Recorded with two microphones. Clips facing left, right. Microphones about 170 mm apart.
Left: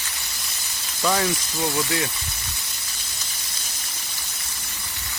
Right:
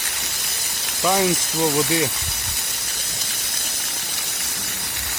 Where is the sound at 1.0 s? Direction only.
20° right (ahead or behind).